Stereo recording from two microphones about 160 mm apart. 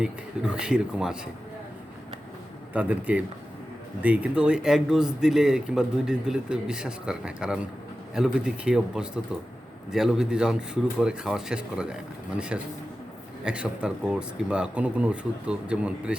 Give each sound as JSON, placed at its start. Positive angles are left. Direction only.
{"t": 0.0, "sound": "a man's voice", "side_deg": -5}
{"t": 2.7, "sound": "a man's voice", "side_deg": -10}